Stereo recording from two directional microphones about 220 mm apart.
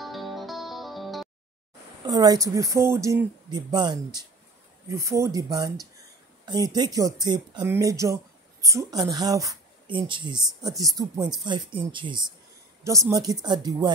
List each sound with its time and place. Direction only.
0.0 s music: centre (ahead or behind)
2.0 s speech: 15° right (ahead or behind)